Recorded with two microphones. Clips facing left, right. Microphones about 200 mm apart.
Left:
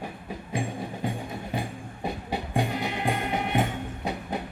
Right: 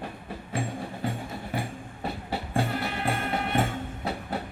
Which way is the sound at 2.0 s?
15° left (ahead or behind).